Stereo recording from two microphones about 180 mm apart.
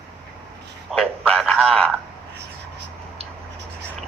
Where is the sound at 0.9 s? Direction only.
5° left (ahead or behind).